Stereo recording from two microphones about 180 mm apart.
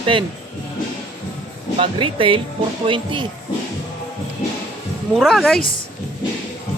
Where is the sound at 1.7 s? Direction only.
30° right (ahead or behind).